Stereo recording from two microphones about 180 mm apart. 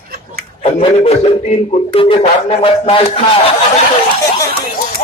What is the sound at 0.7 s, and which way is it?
A man's voice, 35° left (ahead or behind).